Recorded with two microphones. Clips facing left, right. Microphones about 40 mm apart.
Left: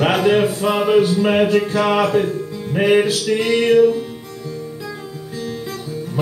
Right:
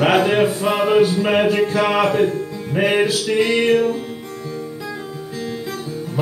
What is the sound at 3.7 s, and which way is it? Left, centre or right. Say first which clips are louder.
Music: left 5 dB; right.